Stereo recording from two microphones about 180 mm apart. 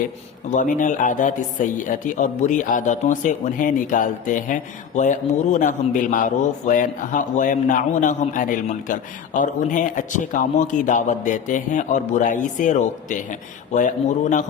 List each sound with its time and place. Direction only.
0.5 s a man's voice: 45° left (ahead or behind)